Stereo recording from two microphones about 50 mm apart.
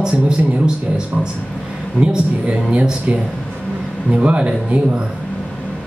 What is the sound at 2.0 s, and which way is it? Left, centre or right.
Speech, right.